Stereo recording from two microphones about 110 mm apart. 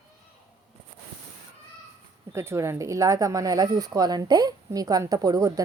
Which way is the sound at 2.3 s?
25° right (ahead or behind).